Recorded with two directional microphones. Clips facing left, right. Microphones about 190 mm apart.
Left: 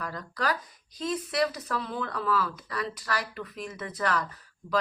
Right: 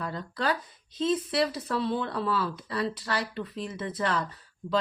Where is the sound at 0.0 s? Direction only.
25° right (ahead or behind).